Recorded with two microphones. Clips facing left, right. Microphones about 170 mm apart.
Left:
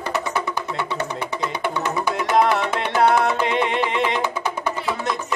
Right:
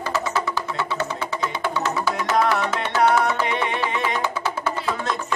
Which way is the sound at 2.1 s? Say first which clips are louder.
Left 3 dB; 20° left (ahead or behind).